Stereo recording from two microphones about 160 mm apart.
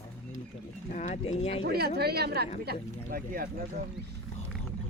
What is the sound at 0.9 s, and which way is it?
Speech, 50° left (ahead or behind).